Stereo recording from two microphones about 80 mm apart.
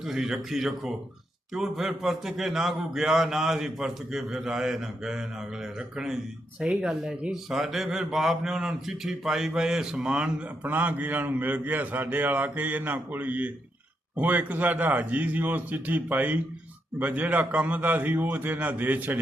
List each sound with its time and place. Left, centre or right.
0.0 s a man's voice: centre
6.6 s a man's voice: centre